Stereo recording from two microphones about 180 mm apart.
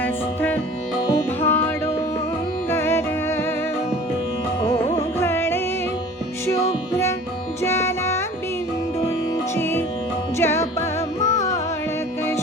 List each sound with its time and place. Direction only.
0.0 s music: 10° left (ahead or behind)
4.6 s music: 20° left (ahead or behind)
7.6 s music: 15° left (ahead or behind)
9.3 s music: 10° left (ahead or behind)